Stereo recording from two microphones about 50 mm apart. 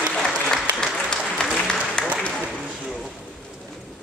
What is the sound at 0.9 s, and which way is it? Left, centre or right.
Applause, centre.